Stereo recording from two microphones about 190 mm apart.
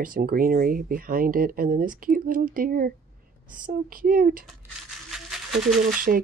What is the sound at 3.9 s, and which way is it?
Speech, 45° right (ahead or behind).